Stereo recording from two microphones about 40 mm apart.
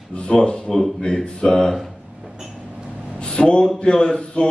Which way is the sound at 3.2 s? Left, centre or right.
Left.